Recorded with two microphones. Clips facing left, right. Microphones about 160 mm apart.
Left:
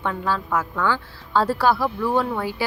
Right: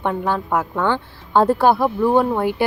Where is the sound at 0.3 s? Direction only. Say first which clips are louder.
Right 3 dB; 55° right (ahead or behind).